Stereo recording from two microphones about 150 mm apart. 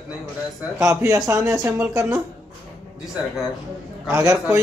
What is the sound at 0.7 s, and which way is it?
Speech, 20° right (ahead or behind).